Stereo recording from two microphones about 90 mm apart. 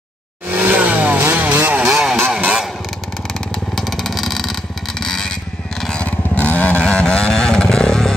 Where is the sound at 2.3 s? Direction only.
15° right (ahead or behind).